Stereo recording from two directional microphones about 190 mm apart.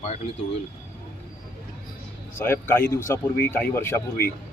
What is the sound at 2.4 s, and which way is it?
Speech, 10° left (ahead or behind).